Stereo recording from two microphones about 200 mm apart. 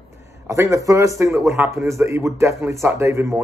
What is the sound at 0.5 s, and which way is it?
Speech, 15° right (ahead or behind).